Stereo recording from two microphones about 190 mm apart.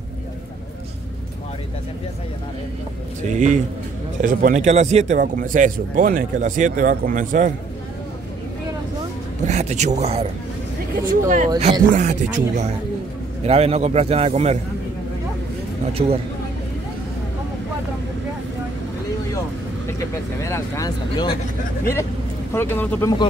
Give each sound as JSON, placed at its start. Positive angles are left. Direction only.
{"t": 3.2, "sound": "a man's voice", "side_deg": -40}
{"t": 9.5, "sound": "a man's voice", "side_deg": -35}
{"t": 11.2, "sound": "a man's voice", "side_deg": -40}
{"t": 15.9, "sound": "a man's voice", "side_deg": -30}
{"t": 20.4, "sound": "a sound", "side_deg": 15}
{"t": 22.5, "sound": "speech", "side_deg": 10}